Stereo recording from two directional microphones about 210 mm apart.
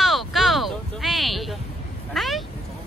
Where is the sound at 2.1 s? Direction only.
Centre (ahead or behind).